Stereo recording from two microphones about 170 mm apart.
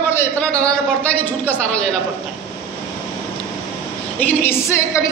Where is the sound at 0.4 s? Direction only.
5° left (ahead or behind).